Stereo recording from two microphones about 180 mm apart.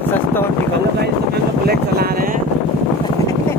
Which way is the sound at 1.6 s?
60° right (ahead or behind).